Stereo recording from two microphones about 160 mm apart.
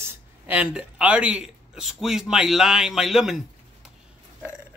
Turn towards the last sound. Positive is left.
turn(degrees=0)  # may be behind; listen again after turning